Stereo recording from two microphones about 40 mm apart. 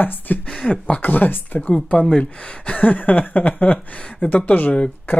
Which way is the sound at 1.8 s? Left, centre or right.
Left.